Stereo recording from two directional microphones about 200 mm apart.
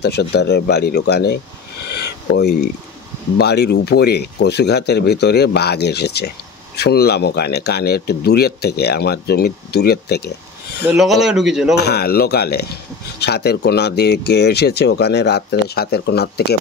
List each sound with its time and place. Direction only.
0.0 s speech: 55° left (ahead or behind)
1.9 s a sound: 55° left (ahead or behind)
3.3 s speech: 55° left (ahead or behind)
10.9 s speech: centre (ahead or behind)
11.7 s speech: 55° left (ahead or behind)